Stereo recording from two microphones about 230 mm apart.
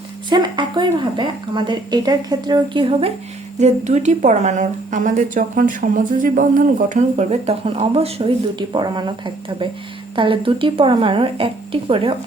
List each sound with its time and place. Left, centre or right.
0.3 s a woman's voice: centre